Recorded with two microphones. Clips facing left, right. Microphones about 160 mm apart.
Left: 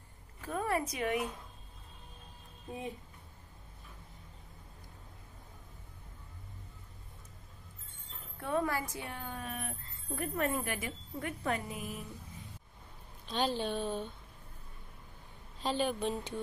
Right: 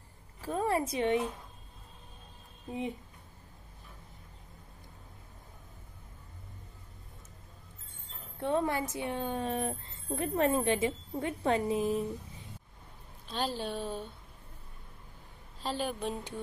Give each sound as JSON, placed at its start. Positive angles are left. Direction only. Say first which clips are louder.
{"t": 0.4, "sound": "a woman's voice", "louder": "right 3 dB", "side_deg": -30}
{"t": 8.4, "sound": "speech", "louder": "right 3 dB", "side_deg": -25}
{"t": 13.3, "sound": "a woman's voice", "louder": "left 1 dB", "side_deg": -5}
{"t": 15.6, "sound": "a woman's voice", "louder": "left 2 dB", "side_deg": -5}